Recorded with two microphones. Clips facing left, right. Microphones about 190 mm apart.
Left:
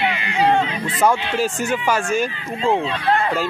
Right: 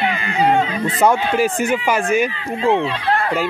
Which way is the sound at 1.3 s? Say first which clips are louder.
Right 4 dB; 55° right (ahead or behind).